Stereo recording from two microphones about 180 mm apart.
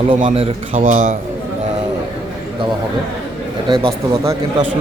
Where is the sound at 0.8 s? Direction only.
50° right (ahead or behind).